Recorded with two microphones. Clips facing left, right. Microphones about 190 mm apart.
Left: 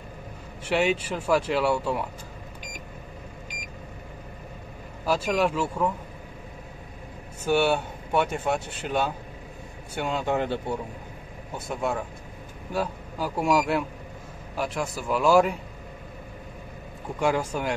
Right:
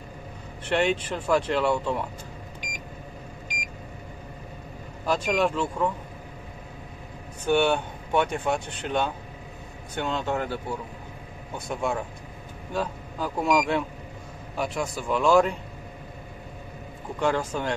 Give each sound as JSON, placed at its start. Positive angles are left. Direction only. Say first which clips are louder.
{"t": 0.7, "sound": "speech", "louder": "even", "side_deg": 5}
{"t": 5.0, "sound": "speech", "louder": "even", "side_deg": 5}
{"t": 7.4, "sound": "speech", "louder": "even", "side_deg": 5}
{"t": 11.5, "sound": "speech", "louder": "even", "side_deg": 0}
{"t": 17.2, "sound": "speech", "louder": "even", "side_deg": 10}